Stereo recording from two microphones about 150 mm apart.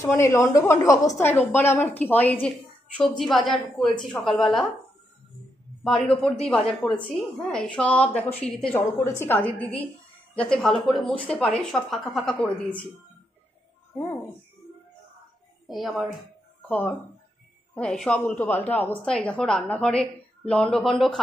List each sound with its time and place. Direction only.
0.0 s a woman's voice: 20° left (ahead or behind)
3.2 s a woman's voice: centre (ahead or behind)
5.9 s a woman's voice: 5° left (ahead or behind)
8.7 s a woman's voice: 15° left (ahead or behind)
15.6 s a woman's voice: centre (ahead or behind)
16.6 s a woman's voice: 10° left (ahead or behind)